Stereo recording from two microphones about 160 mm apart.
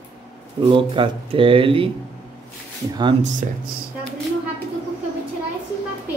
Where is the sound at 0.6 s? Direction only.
30° right (ahead or behind).